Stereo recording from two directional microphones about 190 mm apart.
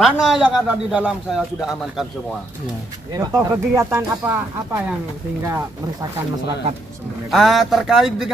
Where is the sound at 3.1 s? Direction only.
20° right (ahead or behind).